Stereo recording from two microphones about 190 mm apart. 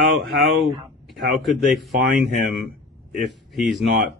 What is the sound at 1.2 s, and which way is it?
Speech, centre (ahead or behind).